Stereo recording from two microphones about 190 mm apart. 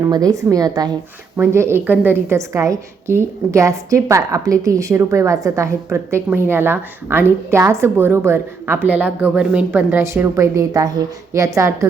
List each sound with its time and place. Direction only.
0.0 s a woman's voice: 20° right (ahead or behind)